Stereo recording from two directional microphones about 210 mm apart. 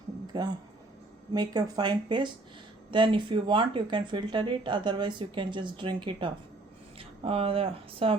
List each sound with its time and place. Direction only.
0.3 s speech: 20° right (ahead or behind)